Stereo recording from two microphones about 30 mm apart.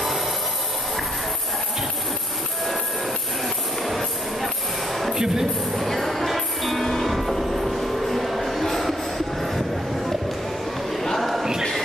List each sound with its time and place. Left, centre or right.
3.8 s music: centre
5.1 s speech: centre
5.8 s music: centre
7.5 s train: centre
11.1 s a sound: centre